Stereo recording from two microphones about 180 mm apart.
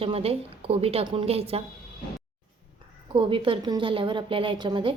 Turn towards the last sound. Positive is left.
turn(degrees=-25)  # may be behind; listen again after turning